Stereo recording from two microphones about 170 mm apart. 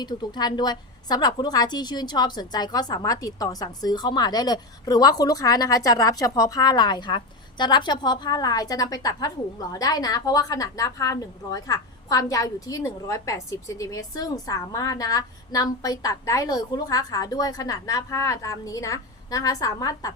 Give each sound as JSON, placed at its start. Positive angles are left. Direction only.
{"t": 0.0, "sound": "a woman's voice", "side_deg": 25}